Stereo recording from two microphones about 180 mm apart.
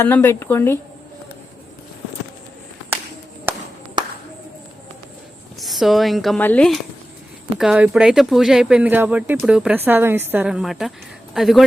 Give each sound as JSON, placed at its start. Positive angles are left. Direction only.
{"t": 0.0, "sound": "speech", "side_deg": 10}
{"t": 3.5, "sound": "music", "side_deg": -10}
{"t": 4.0, "sound": "a sound", "side_deg": -25}
{"t": 5.5, "sound": "speech", "side_deg": 0}
{"t": 7.6, "sound": "speech", "side_deg": -5}